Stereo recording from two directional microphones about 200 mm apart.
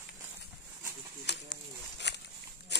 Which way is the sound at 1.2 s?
60° left (ahead or behind).